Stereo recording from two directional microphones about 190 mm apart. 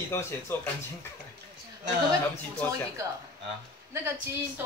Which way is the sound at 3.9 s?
15° right (ahead or behind).